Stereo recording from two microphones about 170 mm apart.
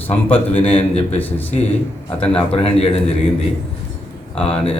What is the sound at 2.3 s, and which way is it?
Speech, 35° left (ahead or behind).